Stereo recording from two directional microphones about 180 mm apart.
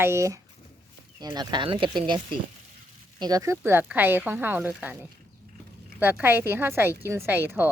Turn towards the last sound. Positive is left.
turn(degrees=-10)  # may be behind; listen again after turning